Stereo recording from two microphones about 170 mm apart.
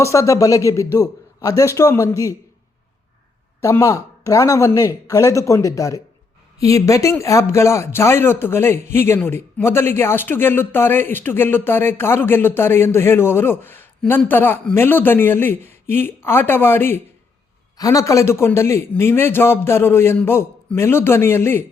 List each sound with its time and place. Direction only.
0.0 s speech: 20° left (ahead or behind)
3.6 s speech: 20° left (ahead or behind)